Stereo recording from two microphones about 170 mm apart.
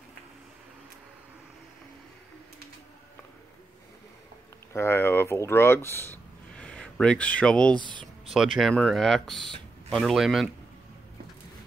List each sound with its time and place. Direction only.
4.7 s speech: 15° left (ahead or behind)
7.7 s speech: 25° right (ahead or behind)
8.0 s a sound: centre (ahead or behind)
8.5 s speech: centre (ahead or behind)